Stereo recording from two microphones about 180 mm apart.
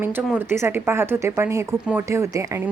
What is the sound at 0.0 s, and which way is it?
Speech, 10° right (ahead or behind).